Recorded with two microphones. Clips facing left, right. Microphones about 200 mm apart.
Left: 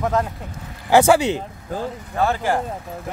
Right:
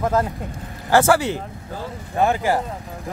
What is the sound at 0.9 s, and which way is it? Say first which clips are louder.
Speech: left 2 dB; 20° left (ahead or behind).